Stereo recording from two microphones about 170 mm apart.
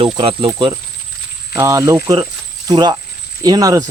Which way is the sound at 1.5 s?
15° right (ahead or behind).